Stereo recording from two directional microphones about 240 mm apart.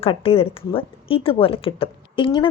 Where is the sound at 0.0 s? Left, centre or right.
Left.